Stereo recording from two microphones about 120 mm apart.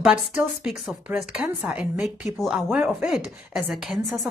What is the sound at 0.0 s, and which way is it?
A woman's voice, 5° right (ahead or behind).